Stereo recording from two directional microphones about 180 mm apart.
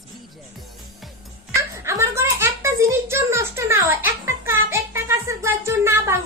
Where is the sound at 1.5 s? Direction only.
15° right (ahead or behind).